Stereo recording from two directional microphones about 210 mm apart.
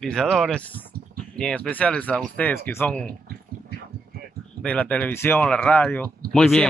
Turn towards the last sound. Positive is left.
turn(degrees=5)  # may be behind; listen again after turning